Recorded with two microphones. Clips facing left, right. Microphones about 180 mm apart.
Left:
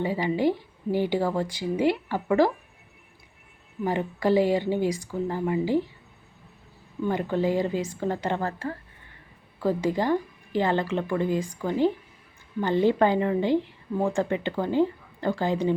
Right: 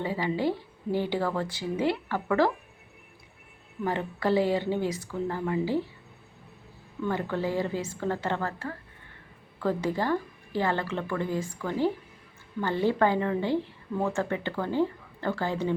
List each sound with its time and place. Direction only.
0.0 s a woman's voice: 15° left (ahead or behind)
3.8 s a woman's voice: 15° left (ahead or behind)
7.0 s a woman's voice: 15° left (ahead or behind)